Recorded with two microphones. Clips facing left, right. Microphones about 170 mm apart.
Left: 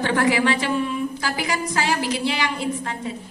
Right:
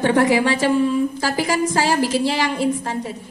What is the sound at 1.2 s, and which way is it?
Speech, 50° right (ahead or behind).